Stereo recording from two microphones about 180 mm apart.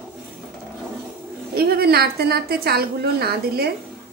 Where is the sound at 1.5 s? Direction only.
60° right (ahead or behind).